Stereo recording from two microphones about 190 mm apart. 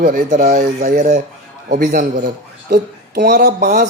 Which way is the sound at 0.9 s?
50° right (ahead or behind).